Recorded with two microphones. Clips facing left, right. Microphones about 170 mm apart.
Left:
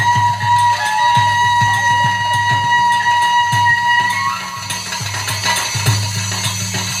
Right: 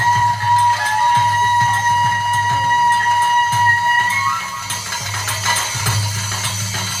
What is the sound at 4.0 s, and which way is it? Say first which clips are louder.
Music: left 1 dB; 30° left (ahead or behind).